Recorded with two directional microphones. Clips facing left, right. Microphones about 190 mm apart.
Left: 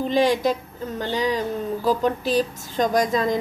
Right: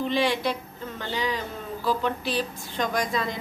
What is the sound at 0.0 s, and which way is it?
A woman's voice, 45° left (ahead or behind).